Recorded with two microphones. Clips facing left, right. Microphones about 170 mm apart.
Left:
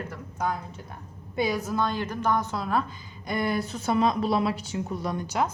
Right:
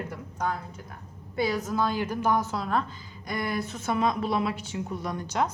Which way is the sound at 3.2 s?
25° left (ahead or behind).